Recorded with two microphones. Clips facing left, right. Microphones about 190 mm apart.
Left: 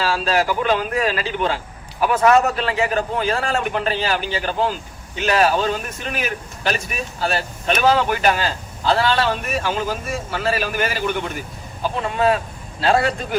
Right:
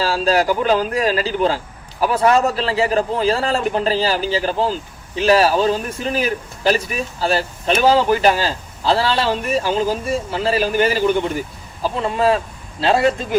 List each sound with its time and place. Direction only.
0.0 s a man's voice: 35° right (ahead or behind)